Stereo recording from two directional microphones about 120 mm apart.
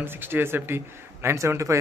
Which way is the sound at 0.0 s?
20° right (ahead or behind).